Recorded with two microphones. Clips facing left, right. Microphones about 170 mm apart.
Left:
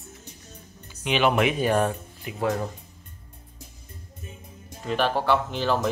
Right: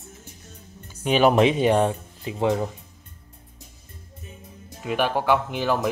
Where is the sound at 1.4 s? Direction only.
25° right (ahead or behind).